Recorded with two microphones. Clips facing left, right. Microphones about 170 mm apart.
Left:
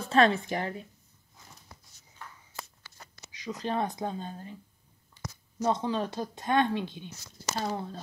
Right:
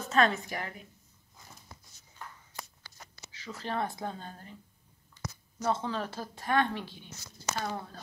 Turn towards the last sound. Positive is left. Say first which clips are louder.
# left 3 dB
turn(degrees=25)  # may be behind; listen again after turning